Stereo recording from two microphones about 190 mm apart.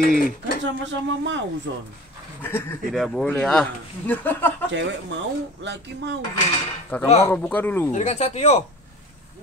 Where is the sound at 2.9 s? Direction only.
Centre (ahead or behind).